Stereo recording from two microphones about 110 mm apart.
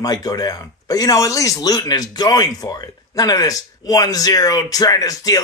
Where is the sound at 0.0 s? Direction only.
35° left (ahead or behind).